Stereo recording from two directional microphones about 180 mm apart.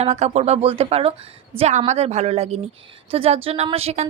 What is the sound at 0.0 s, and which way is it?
A woman's voice, 35° right (ahead or behind).